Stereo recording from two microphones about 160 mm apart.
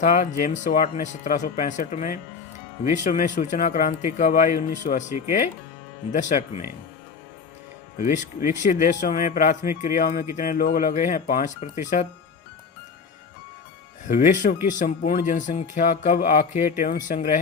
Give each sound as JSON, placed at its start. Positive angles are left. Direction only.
{"t": 0.0, "sound": "speech", "side_deg": 50}
{"t": 8.0, "sound": "speech", "side_deg": 50}
{"t": 14.1, "sound": "speech", "side_deg": 55}